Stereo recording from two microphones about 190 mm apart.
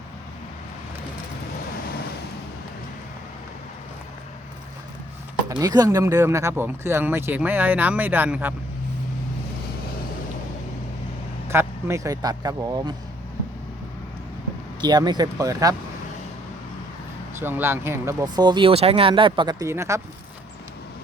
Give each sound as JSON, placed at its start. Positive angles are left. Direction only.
{"t": 5.5, "sound": "speech", "side_deg": -20}
{"t": 11.4, "sound": "speech", "side_deg": -15}
{"t": 14.8, "sound": "speech", "side_deg": -20}
{"t": 17.4, "sound": "speech", "side_deg": -10}